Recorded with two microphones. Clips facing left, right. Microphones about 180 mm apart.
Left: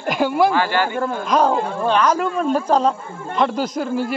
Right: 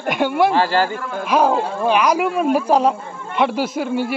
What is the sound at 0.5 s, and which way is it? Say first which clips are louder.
Speech: right 2 dB; 35° right (ahead or behind).